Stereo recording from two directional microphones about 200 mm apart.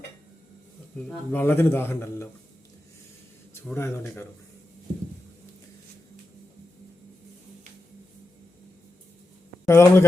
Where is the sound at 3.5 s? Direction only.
10° left (ahead or behind).